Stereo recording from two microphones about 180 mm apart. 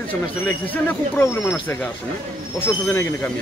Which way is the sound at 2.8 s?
10° left (ahead or behind).